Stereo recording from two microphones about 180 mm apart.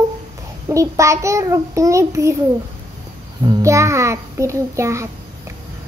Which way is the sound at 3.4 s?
20° right (ahead or behind).